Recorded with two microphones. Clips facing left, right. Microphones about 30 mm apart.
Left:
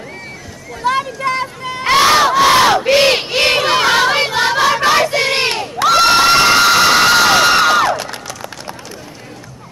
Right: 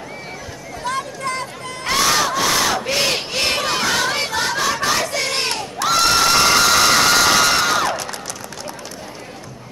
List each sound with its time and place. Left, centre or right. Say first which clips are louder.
0.8 s crowd: left 7 dB; left